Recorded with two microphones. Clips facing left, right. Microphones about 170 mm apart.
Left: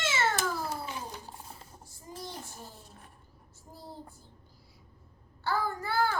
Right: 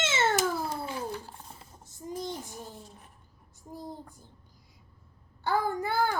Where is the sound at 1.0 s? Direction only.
15° left (ahead or behind).